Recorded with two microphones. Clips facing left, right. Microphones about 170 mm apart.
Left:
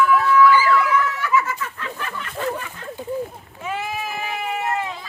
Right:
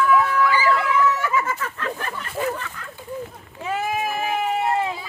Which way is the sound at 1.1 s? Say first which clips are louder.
Left 2 dB; 45° right (ahead or behind).